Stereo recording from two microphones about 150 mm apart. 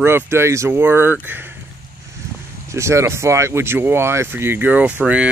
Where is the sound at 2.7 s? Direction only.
20° right (ahead or behind).